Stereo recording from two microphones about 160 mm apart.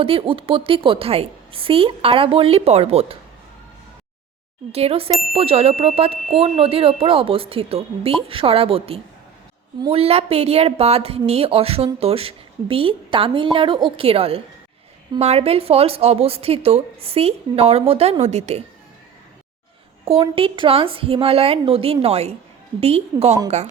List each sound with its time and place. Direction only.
0.0 s a woman's voice: 35° right (ahead or behind)
4.7 s a woman's voice: 40° right (ahead or behind)
20.2 s a woman's voice: 35° right (ahead or behind)